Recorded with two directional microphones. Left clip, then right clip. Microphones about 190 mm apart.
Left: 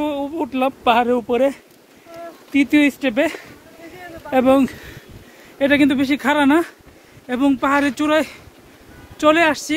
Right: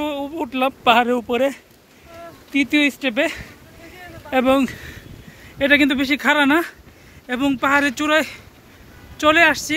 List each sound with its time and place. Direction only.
0.0 s speech: centre (ahead or behind)
2.5 s speech: 15° left (ahead or behind)